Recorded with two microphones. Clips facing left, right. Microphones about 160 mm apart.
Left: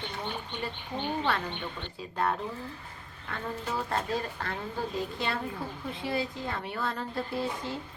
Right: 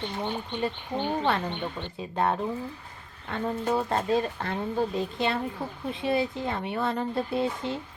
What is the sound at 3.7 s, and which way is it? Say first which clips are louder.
A woman's voice: right 6 dB; 20° right (ahead or behind).